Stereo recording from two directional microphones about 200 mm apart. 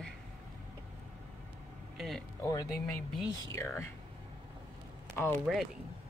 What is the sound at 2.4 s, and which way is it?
Speech, 15° left (ahead or behind).